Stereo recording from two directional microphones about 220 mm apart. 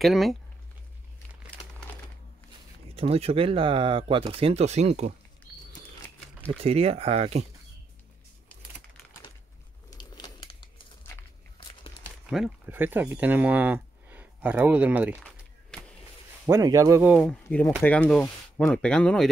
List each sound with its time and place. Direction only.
0.0 s speech: centre (ahead or behind)
2.9 s speech: 25° right (ahead or behind)
6.6 s speech: 25° right (ahead or behind)
9.8 s crumpling: 20° left (ahead or behind)
12.3 s speech: 5° right (ahead or behind)
16.4 s speech: 15° right (ahead or behind); by 19.2 s 5° left (ahead or behind)